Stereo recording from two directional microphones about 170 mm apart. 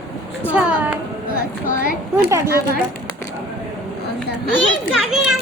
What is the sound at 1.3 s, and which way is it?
Speech, 55° left (ahead or behind).